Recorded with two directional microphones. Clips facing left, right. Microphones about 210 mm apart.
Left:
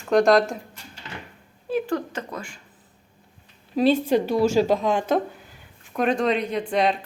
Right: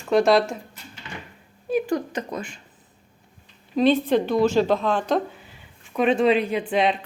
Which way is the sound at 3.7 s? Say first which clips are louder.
Even; 5° left (ahead or behind).